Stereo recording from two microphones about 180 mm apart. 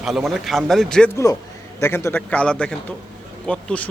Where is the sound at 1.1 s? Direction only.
20° left (ahead or behind).